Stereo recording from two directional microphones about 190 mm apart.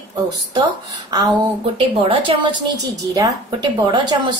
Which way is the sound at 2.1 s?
25° right (ahead or behind).